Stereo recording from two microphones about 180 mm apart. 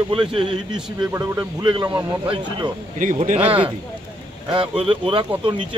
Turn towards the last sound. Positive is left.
turn(degrees=-30)  # may be behind; listen again after turning